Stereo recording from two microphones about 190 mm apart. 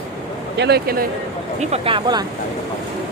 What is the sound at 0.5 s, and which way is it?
Speech, 60° right (ahead or behind).